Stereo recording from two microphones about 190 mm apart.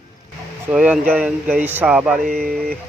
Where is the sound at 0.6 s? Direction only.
5° right (ahead or behind).